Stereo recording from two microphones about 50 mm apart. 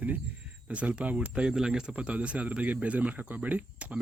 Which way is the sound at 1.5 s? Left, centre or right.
Centre.